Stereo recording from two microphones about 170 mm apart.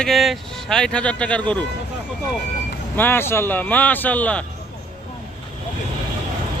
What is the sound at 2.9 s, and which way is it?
Speech, 10° left (ahead or behind).